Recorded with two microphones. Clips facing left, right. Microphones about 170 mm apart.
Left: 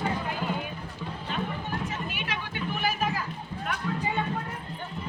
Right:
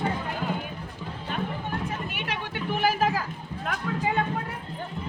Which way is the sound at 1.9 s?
60° right (ahead or behind).